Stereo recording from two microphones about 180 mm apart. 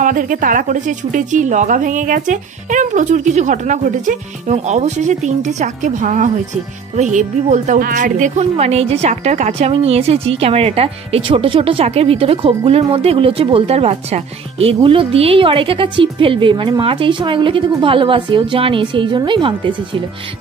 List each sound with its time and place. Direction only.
0.0 s a woman's voice: 50° right (ahead or behind); by 20.0 s 30° right (ahead or behind)